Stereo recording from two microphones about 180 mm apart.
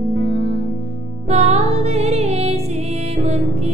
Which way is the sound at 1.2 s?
35° right (ahead or behind).